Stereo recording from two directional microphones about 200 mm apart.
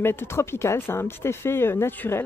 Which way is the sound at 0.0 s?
10° left (ahead or behind).